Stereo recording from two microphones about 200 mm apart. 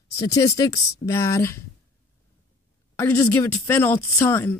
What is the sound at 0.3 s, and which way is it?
Speech, 15° left (ahead or behind).